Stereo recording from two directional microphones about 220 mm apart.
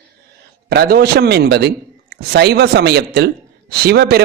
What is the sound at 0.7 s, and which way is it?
A man's voice, 45° right (ahead or behind).